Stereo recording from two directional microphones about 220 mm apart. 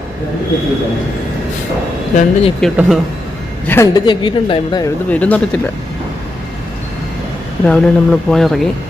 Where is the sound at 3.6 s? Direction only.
15° left (ahead or behind).